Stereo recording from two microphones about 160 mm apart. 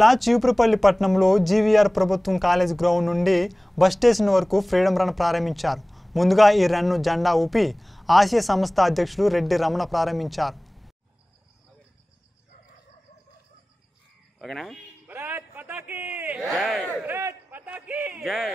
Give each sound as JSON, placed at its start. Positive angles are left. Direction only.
{"t": 0.0, "sound": "speech", "side_deg": 0}
{"t": 14.4, "sound": "speech", "side_deg": 0}
{"t": 15.0, "sound": "a sound", "side_deg": -10}
{"t": 16.4, "sound": "speech", "side_deg": 0}
{"t": 17.0, "sound": "a sound", "side_deg": -15}
{"t": 18.2, "sound": "speech", "side_deg": 0}